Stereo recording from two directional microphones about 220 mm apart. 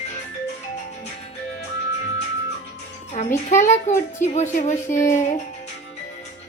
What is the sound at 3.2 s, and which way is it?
A child's voice, 35° left (ahead or behind).